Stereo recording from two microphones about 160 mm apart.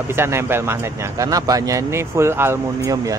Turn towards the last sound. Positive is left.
turn(degrees=-20)  # may be behind; listen again after turning